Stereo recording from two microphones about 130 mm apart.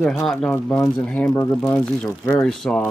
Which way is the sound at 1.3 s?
20° left (ahead or behind).